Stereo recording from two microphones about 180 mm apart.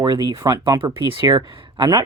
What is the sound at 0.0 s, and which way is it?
Speech, 25° right (ahead or behind).